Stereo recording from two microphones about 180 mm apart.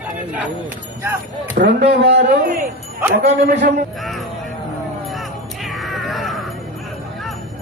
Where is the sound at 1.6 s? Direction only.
65° right (ahead or behind).